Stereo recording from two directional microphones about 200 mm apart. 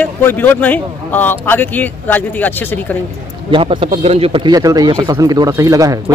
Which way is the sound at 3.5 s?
25° right (ahead or behind).